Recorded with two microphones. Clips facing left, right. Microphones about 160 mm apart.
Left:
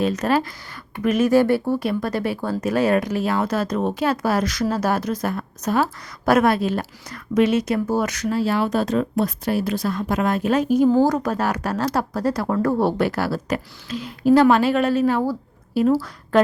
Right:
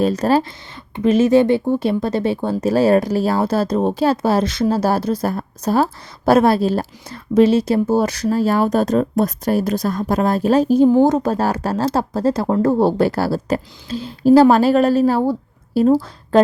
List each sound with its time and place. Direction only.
0.0 s speech: 35° right (ahead or behind)
10.8 s a woman's voice: 20° right (ahead or behind); by 15.3 s 35° right (ahead or behind)
15.9 s a woman's voice: 20° right (ahead or behind)